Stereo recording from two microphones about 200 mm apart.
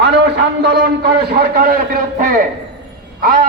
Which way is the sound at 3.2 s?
45° right (ahead or behind).